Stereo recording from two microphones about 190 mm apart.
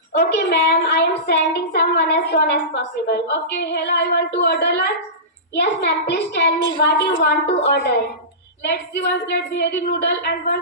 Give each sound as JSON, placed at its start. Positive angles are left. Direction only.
{"t": 0.1, "sound": "a woman's voice", "side_deg": 65}